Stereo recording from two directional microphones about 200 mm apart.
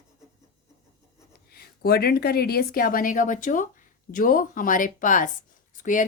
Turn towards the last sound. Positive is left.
turn(degrees=40)  # may be behind; listen again after turning